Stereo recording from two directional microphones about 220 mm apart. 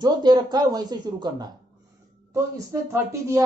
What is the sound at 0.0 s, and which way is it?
Speech, 20° right (ahead or behind).